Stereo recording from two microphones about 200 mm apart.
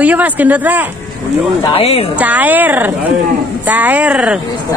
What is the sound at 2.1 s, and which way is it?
Speech, 10° right (ahead or behind).